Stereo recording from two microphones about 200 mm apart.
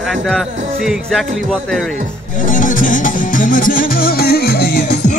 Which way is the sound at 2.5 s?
40° left (ahead or behind).